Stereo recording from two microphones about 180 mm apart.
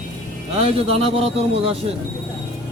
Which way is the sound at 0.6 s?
35° right (ahead or behind).